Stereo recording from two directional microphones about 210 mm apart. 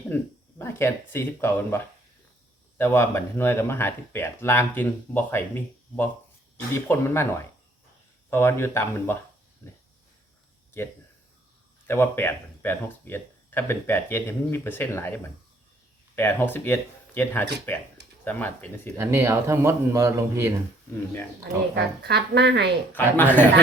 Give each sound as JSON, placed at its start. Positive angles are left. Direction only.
{"t": 0.1, "sound": "speech", "side_deg": 10}
{"t": 11.9, "sound": "speech", "side_deg": 10}
{"t": 18.9, "sound": "speech", "side_deg": -10}
{"t": 22.0, "sound": "speech", "side_deg": -50}
{"t": 22.9, "sound": "speech", "side_deg": 10}